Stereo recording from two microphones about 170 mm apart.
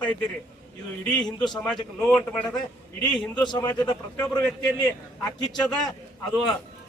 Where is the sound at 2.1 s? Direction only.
5° left (ahead or behind).